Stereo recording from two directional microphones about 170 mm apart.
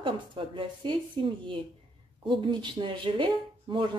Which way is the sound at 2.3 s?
30° right (ahead or behind).